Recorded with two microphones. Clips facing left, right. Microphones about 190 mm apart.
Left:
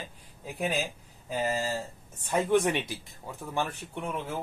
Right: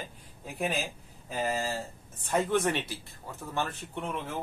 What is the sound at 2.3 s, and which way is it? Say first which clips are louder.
Speech: left 2 dB; 15° left (ahead or behind).